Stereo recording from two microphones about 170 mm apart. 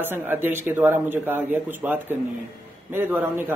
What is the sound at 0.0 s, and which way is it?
A man's voice, 10° right (ahead or behind).